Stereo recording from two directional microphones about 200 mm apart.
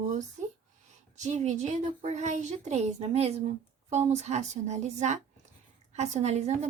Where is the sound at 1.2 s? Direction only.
35° right (ahead or behind).